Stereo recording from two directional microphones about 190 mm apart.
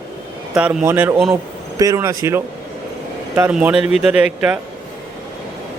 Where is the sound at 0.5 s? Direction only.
5° right (ahead or behind).